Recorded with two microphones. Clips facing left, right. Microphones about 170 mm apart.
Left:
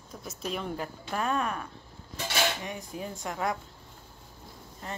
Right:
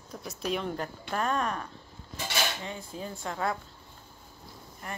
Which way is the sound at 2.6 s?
15° left (ahead or behind).